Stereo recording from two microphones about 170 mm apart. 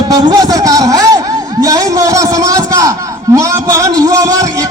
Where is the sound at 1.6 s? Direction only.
20° right (ahead or behind).